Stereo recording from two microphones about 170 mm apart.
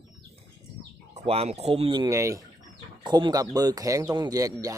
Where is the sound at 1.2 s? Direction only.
35° right (ahead or behind).